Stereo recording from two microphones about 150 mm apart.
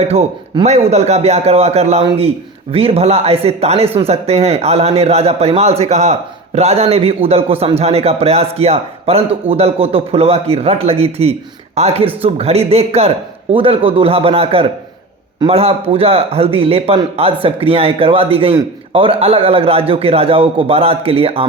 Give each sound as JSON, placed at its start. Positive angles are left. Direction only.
{"t": 0.0, "sound": "a man's voice", "side_deg": -45}